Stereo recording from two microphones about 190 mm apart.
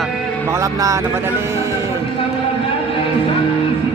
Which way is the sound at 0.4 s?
15° right (ahead or behind).